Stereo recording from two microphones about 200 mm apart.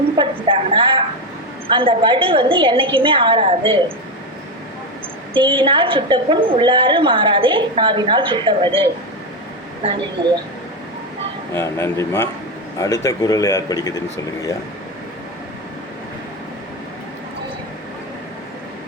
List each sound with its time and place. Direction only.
0.2 s a sound: 25° right (ahead or behind)
1.7 s a woman's voice: 25° right (ahead or behind)
5.3 s a woman's voice: 25° right (ahead or behind)
11.5 s speech: 10° left (ahead or behind)